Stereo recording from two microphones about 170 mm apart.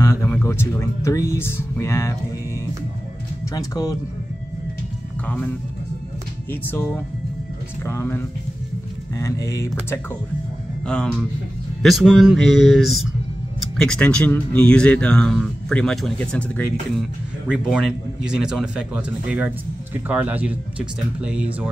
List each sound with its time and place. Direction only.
0.0 s speech: 15° left (ahead or behind)
3.5 s speech: 20° left (ahead or behind)
5.2 s speech: 10° left (ahead or behind)
6.5 s speech: 10° left (ahead or behind)
10.9 s speech: 5° left (ahead or behind)
17.5 s a man's voice: 5° right (ahead or behind)